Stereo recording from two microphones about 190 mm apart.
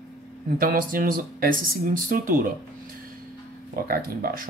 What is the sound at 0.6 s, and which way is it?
Speech, 50° right (ahead or behind).